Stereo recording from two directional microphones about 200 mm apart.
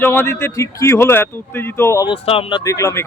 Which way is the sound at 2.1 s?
30° left (ahead or behind).